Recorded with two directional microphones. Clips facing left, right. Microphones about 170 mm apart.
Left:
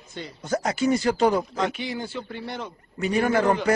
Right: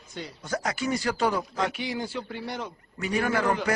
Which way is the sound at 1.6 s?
10° right (ahead or behind).